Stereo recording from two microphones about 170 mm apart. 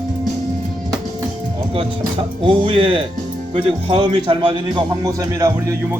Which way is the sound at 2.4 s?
30° right (ahead or behind).